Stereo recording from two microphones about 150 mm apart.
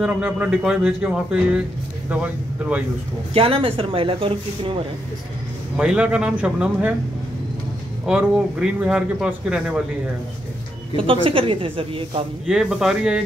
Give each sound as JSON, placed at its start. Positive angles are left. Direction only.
{"t": 0.0, "sound": "a man's voice", "side_deg": -10}
{"t": 3.3, "sound": "speech", "side_deg": -40}
{"t": 5.8, "sound": "a man's voice", "side_deg": -5}
{"t": 8.1, "sound": "a man's voice", "side_deg": -10}
{"t": 11.0, "sound": "speech", "side_deg": -35}
{"t": 12.4, "sound": "speech", "side_deg": -5}